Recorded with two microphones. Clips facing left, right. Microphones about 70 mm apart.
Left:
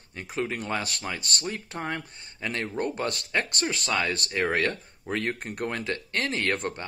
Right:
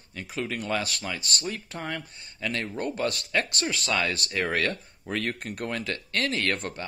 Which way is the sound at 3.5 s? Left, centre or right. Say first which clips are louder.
Even; left.